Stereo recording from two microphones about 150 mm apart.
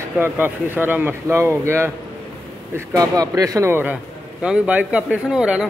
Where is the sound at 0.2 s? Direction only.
15° right (ahead or behind).